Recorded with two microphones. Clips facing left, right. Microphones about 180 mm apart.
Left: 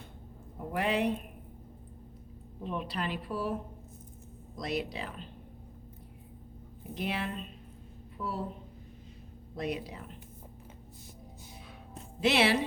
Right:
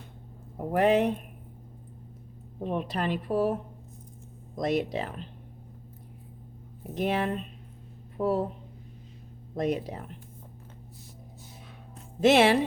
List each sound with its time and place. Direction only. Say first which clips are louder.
0.7 s a woman's voice: right 7 dB; 45° right (ahead or behind)
2.6 s a woman's voice: right 6 dB; 50° right (ahead or behind)
6.9 s a woman's voice: right 7 dB; 45° right (ahead or behind)
9.6 s a woman's voice: right 7 dB; 45° right (ahead or behind)
12.2 s a woman's voice: right 6 dB; 45° right (ahead or behind)